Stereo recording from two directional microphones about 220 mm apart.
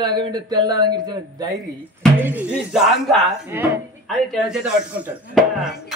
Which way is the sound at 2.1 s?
10° right (ahead or behind).